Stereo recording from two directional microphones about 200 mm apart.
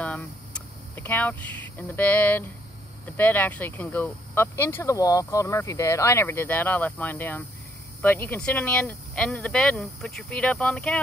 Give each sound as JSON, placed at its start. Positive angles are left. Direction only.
{"t": 0.9, "sound": "speech", "side_deg": 10}